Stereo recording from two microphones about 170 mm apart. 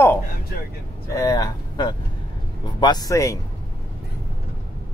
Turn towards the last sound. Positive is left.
turn(degrees=20)  # may be behind; listen again after turning